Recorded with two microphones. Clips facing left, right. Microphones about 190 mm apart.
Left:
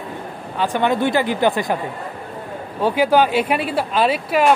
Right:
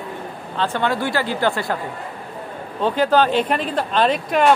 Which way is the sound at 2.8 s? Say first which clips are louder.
Left 1 dB; 10° left (ahead or behind).